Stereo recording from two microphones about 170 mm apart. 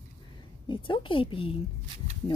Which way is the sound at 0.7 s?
30° left (ahead or behind).